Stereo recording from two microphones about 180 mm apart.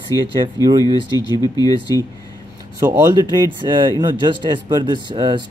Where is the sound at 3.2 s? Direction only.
25° right (ahead or behind).